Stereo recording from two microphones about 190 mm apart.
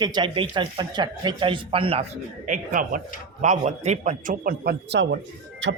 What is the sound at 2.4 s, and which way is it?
A man's voice, 45° right (ahead or behind).